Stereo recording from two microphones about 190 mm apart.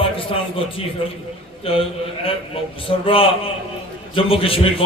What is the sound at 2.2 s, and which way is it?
A man's voice, 30° left (ahead or behind).